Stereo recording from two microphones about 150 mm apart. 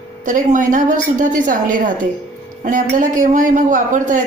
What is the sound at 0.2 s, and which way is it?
A man's voice, 60° right (ahead or behind).